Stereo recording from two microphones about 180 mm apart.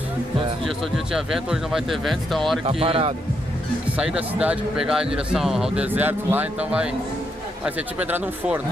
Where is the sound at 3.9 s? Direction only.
5° right (ahead or behind).